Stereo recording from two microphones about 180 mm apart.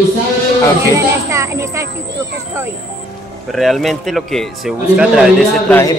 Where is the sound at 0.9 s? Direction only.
15° right (ahead or behind).